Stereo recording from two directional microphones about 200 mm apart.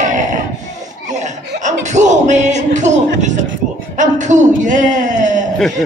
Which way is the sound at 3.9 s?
35° right (ahead or behind).